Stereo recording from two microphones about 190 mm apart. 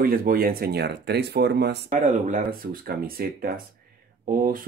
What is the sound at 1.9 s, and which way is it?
Speech, 40° right (ahead or behind).